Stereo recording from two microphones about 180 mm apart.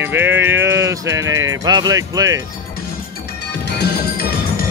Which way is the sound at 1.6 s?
20° right (ahead or behind).